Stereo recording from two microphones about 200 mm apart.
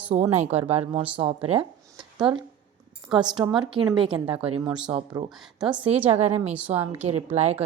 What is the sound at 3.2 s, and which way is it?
Speech, 20° right (ahead or behind).